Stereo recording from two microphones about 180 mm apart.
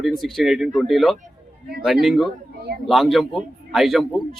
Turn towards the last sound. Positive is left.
turn(degrees=0)  # may be behind; listen again after turning